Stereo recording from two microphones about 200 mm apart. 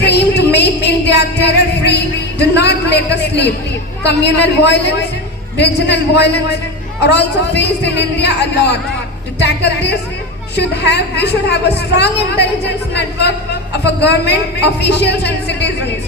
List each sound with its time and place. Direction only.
0.0 s music: 60° left (ahead or behind)
2.4 s a sound: 55° left (ahead or behind)
4.0 s a woman's voice: 60° left (ahead or behind)